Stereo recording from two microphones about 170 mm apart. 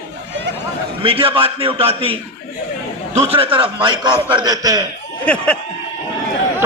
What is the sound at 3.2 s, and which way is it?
A man's voice, 35° right (ahead or behind).